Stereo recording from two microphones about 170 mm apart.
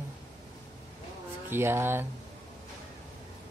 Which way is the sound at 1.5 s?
15° right (ahead or behind).